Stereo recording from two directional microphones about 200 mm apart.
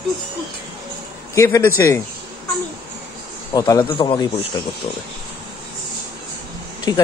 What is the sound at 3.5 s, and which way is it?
Speech, 20° left (ahead or behind).